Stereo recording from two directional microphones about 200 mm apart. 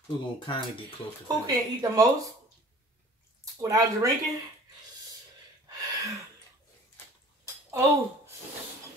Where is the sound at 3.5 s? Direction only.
15° right (ahead or behind).